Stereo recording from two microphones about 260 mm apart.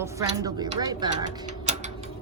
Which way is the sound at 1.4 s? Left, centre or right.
Right.